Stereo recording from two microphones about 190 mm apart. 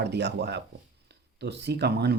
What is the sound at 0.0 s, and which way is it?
Speech, 60° right (ahead or behind).